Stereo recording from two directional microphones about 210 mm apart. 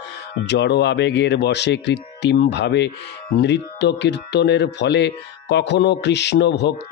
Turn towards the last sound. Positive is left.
turn(degrees=55)  # may be behind; listen again after turning